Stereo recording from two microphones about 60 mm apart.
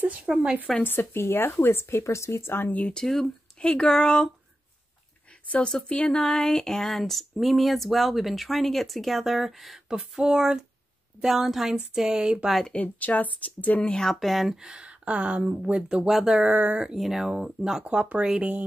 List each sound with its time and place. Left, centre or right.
0.0 s speech: right
0.8 s speech: left
2.8 s speech: centre
5.7 s speech: centre
12.7 s speech: left
13.9 s speech: centre
16.4 s speech: right
16.9 s speech: centre
17.8 s speech: right